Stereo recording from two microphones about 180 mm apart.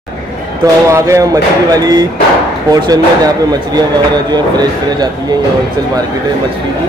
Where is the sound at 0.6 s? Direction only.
15° right (ahead or behind).